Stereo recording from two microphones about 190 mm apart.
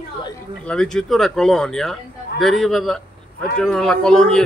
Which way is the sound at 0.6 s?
5° left (ahead or behind).